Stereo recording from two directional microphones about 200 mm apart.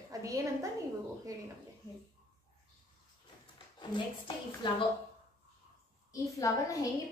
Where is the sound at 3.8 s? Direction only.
25° left (ahead or behind).